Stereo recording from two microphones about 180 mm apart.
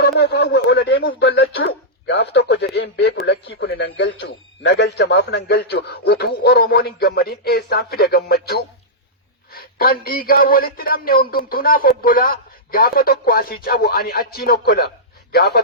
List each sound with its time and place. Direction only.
0.2 s a man's voice: 70° left (ahead or behind)